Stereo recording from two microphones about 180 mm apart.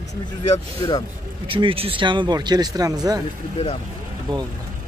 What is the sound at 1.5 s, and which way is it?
Speech, 30° right (ahead or behind).